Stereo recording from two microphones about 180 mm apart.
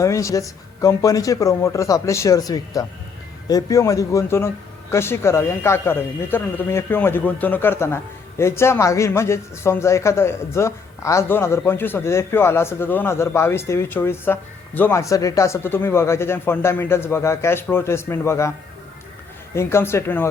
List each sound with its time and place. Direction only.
0.0 s speech: 15° left (ahead or behind)
19.5 s speech: 15° left (ahead or behind)